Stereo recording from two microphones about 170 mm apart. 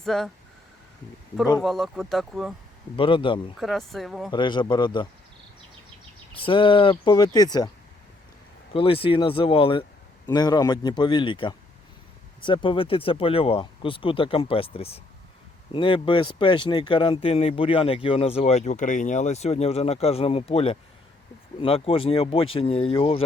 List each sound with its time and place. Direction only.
0.0 s speech: centre (ahead or behind)
1.6 s speech: centre (ahead or behind)
2.9 s speech: 30° left (ahead or behind)
3.6 s speech: centre (ahead or behind)
4.3 s speech: 25° left (ahead or behind)
6.3 s speech: 30° left (ahead or behind)
8.7 s speech: 30° left (ahead or behind)